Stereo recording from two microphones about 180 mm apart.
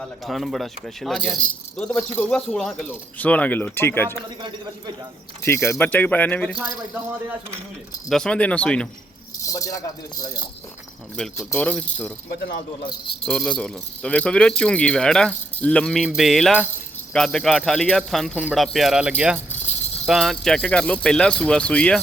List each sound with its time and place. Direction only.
0.0 s speech: centre (ahead or behind)
4.1 s a man's voice: 25° right (ahead or behind)
5.5 s speech: 15° left (ahead or behind)
6.6 s speech: 10° right (ahead or behind)
8.1 s speech: 5° left (ahead or behind)
9.4 s speech: 20° left (ahead or behind)
11.2 s speech: 5° left (ahead or behind)
13.2 s speech: 5° left (ahead or behind)